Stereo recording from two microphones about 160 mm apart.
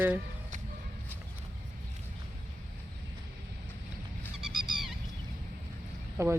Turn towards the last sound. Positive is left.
turn(degrees=-15)  # may be behind; listen again after turning